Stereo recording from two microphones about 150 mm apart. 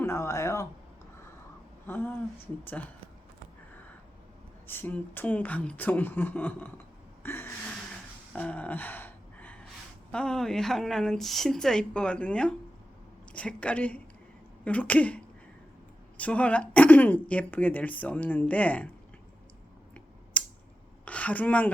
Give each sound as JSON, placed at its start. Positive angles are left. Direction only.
{"t": 0.0, "sound": "a sound", "side_deg": 20}
{"t": 1.9, "sound": "speech", "side_deg": 10}
{"t": 4.6, "sound": "speech", "side_deg": 15}
{"t": 7.2, "sound": "gasp", "side_deg": 15}
{"t": 10.1, "sound": "speech", "side_deg": 5}
{"t": 20.4, "sound": "scissors", "side_deg": 10}
{"t": 21.0, "sound": "speech", "side_deg": 10}